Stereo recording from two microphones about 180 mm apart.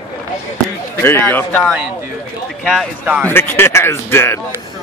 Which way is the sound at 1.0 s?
10° left (ahead or behind).